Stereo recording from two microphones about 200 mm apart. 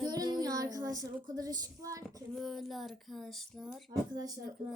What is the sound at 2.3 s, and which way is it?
A woman's voice, centre (ahead or behind).